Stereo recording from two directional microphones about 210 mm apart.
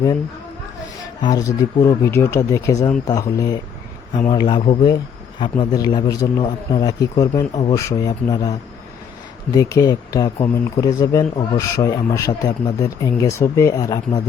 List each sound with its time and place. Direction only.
1.2 s a man's voice: 20° left (ahead or behind)
9.6 s speech: 15° left (ahead or behind)